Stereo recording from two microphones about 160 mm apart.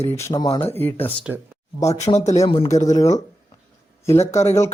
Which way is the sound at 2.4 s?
30° left (ahead or behind).